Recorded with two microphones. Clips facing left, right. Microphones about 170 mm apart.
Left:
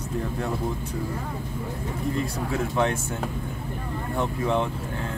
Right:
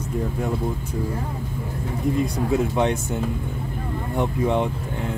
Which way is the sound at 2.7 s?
20° right (ahead or behind).